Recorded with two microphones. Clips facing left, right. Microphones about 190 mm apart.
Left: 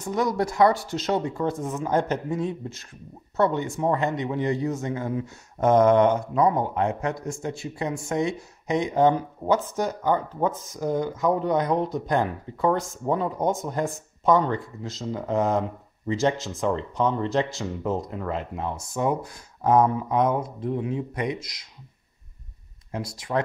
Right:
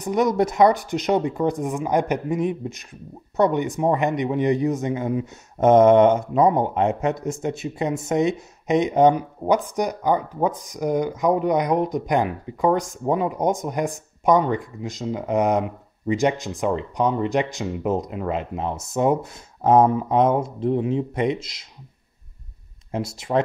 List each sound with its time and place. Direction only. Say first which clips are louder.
0.0 s speech: right 5 dB; 20° right (ahead or behind)
22.8 s speech: right 5 dB; 25° right (ahead or behind)